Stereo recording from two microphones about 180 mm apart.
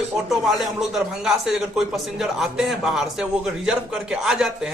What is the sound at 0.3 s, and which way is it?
A man's voice, centre (ahead or behind).